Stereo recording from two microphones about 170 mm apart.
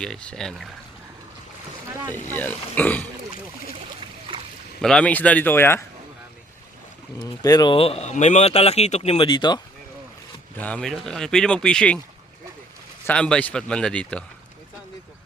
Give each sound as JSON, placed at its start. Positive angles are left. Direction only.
{"t": 0.0, "sound": "speech", "side_deg": 5}
{"t": 2.3, "sound": "speech", "side_deg": 10}
{"t": 4.3, "sound": "boat", "side_deg": -35}
{"t": 4.8, "sound": "speech", "side_deg": 5}
{"t": 7.2, "sound": "speech", "side_deg": 25}
{"t": 10.6, "sound": "speech", "side_deg": 5}
{"t": 13.1, "sound": "speech", "side_deg": 5}